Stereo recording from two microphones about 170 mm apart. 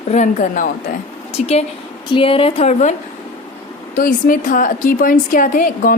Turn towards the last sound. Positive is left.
turn(degrees=55)  # may be behind; listen again after turning